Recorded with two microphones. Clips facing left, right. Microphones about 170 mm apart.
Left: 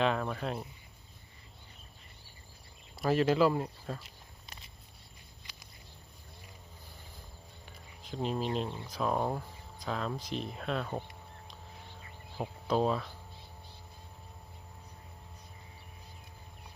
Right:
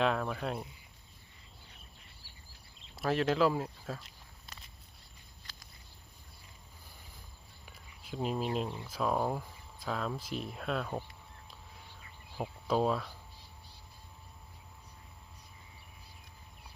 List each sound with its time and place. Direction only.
0.0 s speech: centre (ahead or behind)
2.2 s a sound: 80° right
2.9 s speech: centre (ahead or behind)
7.6 s speech: 5° right (ahead or behind)
12.4 s speech: centre (ahead or behind)